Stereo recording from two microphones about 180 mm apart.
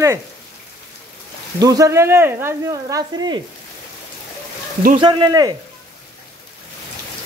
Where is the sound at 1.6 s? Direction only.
20° right (ahead or behind).